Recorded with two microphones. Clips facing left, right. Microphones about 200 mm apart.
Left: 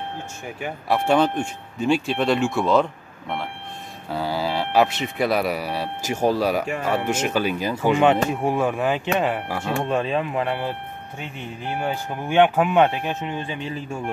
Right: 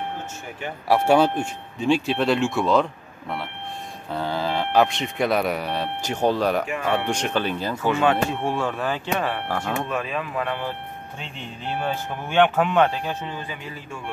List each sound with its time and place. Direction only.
0.8 s speech: 10° right (ahead or behind); by 9.8 s 10° left (ahead or behind)
9.8 s speech: 30° left (ahead or behind)